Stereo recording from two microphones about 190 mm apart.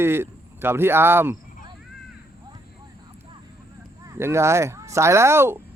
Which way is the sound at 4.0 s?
15° right (ahead or behind).